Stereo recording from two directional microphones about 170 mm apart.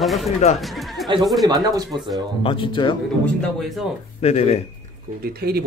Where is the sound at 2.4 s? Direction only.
30° left (ahead or behind).